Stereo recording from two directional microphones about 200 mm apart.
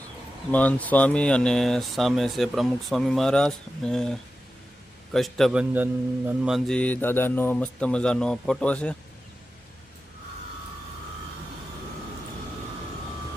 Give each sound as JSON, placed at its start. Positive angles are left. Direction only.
{"t": 0.5, "sound": "a man's voice", "side_deg": 5}